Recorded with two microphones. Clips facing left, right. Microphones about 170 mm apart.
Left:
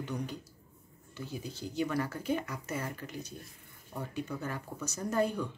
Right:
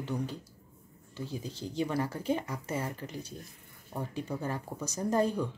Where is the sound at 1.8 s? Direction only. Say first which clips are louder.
Right 1 dB; 30° right (ahead or behind).